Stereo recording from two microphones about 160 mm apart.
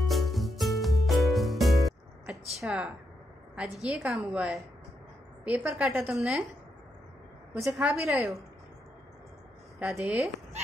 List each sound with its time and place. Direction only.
0.1 s music: centre (ahead or behind)
3.5 s a woman's voice: 5° right (ahead or behind)
7.6 s a woman's voice: centre (ahead or behind)
9.8 s a woman's voice: 10° right (ahead or behind)